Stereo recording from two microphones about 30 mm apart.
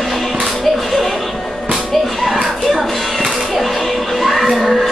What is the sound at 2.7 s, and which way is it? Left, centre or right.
Music, centre.